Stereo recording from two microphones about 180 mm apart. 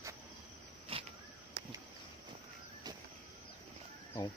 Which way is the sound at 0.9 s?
30° right (ahead or behind).